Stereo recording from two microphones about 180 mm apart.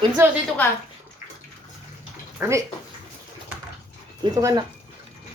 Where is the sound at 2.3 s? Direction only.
15° right (ahead or behind).